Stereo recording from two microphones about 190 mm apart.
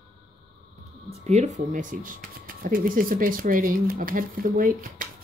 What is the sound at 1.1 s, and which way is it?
Speech, 35° right (ahead or behind).